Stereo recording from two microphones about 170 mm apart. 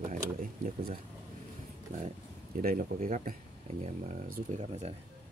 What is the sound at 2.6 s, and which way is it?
Speech, 55° right (ahead or behind).